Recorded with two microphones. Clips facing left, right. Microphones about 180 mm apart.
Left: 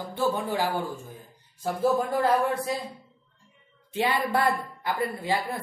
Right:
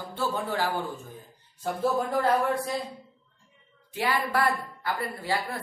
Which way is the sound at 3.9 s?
25° left (ahead or behind).